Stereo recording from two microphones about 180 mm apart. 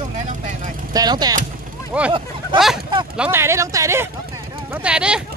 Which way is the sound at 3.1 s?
15° right (ahead or behind).